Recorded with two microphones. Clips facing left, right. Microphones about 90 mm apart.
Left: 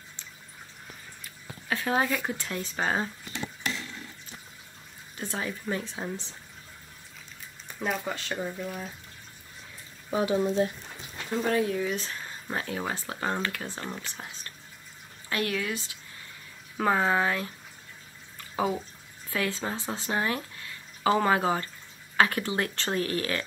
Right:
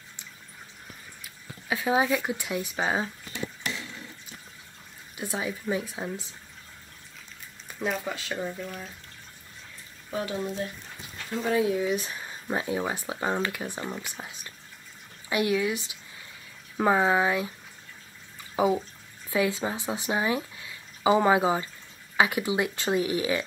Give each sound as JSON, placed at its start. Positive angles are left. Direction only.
{"t": 1.2, "sound": "speech", "side_deg": -10}
{"t": 5.1, "sound": "speech", "side_deg": -10}
{"t": 7.8, "sound": "speech", "side_deg": 0}
{"t": 10.1, "sound": "speech", "side_deg": 20}
{"t": 11.3, "sound": "speech", "side_deg": -5}
{"t": 14.2, "sound": "drip", "side_deg": -15}
{"t": 15.2, "sound": "speech", "side_deg": -15}
{"t": 18.6, "sound": "speech", "side_deg": -15}